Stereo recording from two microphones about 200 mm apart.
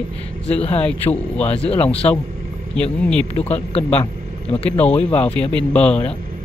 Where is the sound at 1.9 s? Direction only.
30° left (ahead or behind).